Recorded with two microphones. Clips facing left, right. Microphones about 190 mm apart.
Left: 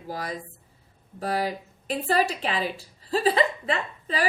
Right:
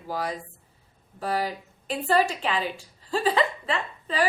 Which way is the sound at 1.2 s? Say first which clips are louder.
Left 1 dB; 40° left (ahead or behind).